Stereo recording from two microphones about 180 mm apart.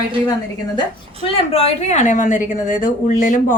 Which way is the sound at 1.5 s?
35° left (ahead or behind).